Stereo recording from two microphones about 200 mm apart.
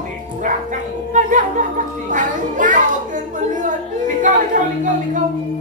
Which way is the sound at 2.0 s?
40° right (ahead or behind).